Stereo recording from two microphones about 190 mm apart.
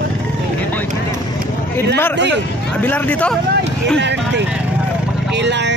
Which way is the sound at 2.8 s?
10° left (ahead or behind).